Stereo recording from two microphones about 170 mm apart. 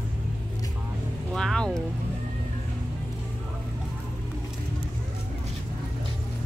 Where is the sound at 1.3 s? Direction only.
5° left (ahead or behind).